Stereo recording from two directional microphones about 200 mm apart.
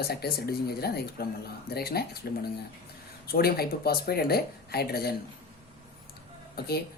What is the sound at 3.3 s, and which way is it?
Speech, 50° left (ahead or behind).